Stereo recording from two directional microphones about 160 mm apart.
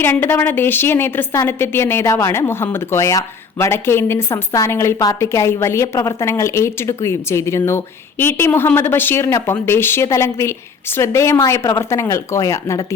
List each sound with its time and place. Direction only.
0.0 s a woman's voice: 10° left (ahead or behind)